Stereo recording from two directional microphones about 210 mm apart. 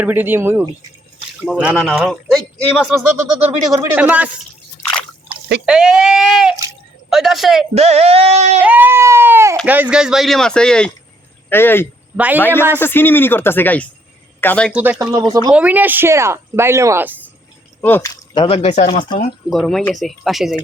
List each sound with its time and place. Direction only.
0.0 s speech: 10° right (ahead or behind)
4.8 s squish: 5° left (ahead or behind)
5.6 s speech: 5° right (ahead or behind)
7.8 s speech: 30° right (ahead or behind)
8.6 s speech: 10° right (ahead or behind); by 11.9 s 10° left (ahead or behind)
12.1 s speech: 5° right (ahead or behind)
12.8 s speech: 10° left (ahead or behind)
14.7 s speech: 10° right (ahead or behind)
17.7 s speech: 10° left (ahead or behind); by 19.0 s 35° left (ahead or behind)
19.5 s speech: centre (ahead or behind)